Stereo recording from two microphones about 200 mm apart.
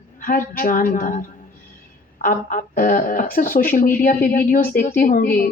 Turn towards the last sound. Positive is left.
turn(degrees=45)  # may be behind; listen again after turning